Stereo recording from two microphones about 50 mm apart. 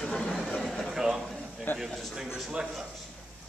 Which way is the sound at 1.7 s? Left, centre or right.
Left.